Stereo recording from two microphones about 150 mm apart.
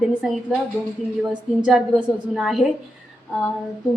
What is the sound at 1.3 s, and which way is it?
A woman's voice, 5° right (ahead or behind).